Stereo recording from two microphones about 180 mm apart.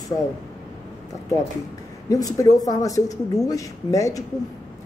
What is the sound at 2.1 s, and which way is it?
Speech, 20° left (ahead or behind).